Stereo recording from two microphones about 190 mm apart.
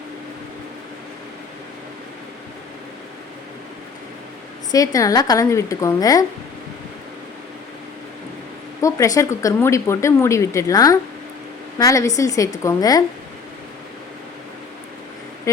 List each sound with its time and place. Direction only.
4.7 s a woman's voice: 20° left (ahead or behind)
8.8 s a woman's voice: 15° left (ahead or behind)